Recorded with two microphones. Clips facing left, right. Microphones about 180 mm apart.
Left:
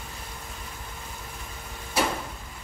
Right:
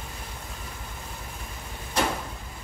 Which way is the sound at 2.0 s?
10° left (ahead or behind).